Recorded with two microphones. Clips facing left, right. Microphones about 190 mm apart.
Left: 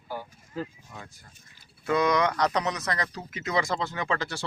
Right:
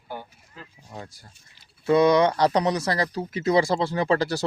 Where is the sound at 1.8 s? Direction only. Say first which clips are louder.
Right 6 dB; 30° right (ahead or behind).